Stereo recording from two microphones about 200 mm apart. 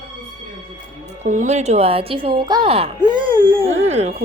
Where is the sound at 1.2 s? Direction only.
35° right (ahead or behind).